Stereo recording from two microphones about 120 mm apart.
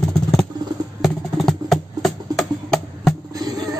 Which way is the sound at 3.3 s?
35° right (ahead or behind).